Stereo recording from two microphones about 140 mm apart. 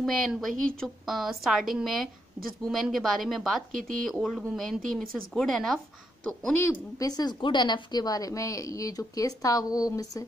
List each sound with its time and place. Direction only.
0.0 s a woman's voice: centre (ahead or behind)
7.0 s a woman's voice: 30° left (ahead or behind)